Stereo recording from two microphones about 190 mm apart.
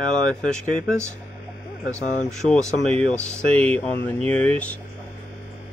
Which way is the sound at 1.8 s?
15° right (ahead or behind).